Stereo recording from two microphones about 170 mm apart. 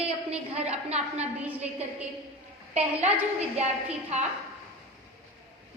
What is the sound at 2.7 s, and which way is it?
A woman's voice, 40° right (ahead or behind).